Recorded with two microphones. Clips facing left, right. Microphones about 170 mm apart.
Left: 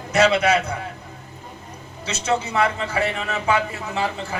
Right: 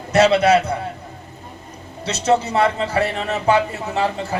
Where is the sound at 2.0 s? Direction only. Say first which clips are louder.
Right 5 dB; 35° right (ahead or behind).